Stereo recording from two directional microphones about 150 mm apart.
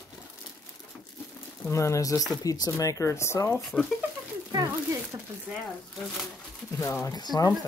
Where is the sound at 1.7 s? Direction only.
20° left (ahead or behind).